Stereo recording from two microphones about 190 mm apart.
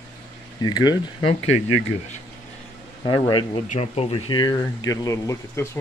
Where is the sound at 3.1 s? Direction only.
25° left (ahead or behind).